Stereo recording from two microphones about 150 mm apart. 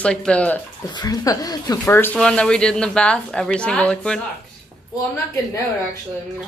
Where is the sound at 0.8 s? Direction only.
25° left (ahead or behind).